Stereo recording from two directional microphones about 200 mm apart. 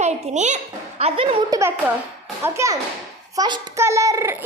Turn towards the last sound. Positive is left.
turn(degrees=-15)  # may be behind; listen again after turning